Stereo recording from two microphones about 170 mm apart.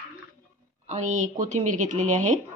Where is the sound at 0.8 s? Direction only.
45° right (ahead or behind).